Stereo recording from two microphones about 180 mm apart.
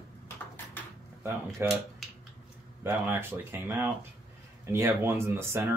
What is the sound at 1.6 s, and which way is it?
Speech, 15° right (ahead or behind).